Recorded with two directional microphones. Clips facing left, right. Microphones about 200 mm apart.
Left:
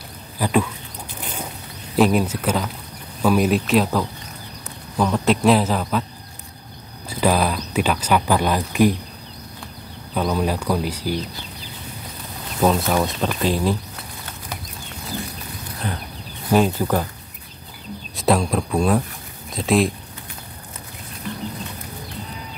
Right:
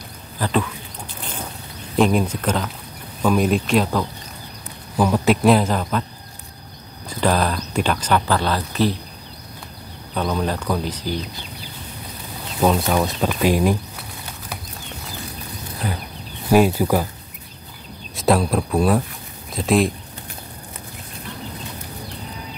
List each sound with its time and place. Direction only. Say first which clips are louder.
0.4 s speech: left 2 dB; 10° left (ahead or behind)
2.0 s speech: even; 5° left (ahead or behind)
7.1 s speech: left 1 dB; 10° left (ahead or behind)
10.1 s speech: left 1 dB; 10° left (ahead or behind)
12.5 s speech: even; centre (ahead or behind)
15.8 s speech: right 1 dB; 5° right (ahead or behind)
18.1 s speech: right 1 dB; centre (ahead or behind)